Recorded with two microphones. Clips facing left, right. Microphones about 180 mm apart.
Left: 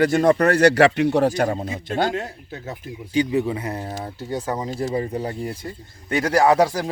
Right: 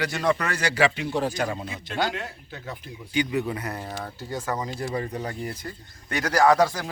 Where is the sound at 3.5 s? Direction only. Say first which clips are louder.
Left 4 dB; 25° left (ahead or behind).